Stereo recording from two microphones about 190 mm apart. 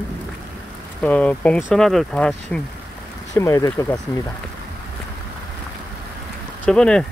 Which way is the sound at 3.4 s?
15° left (ahead or behind).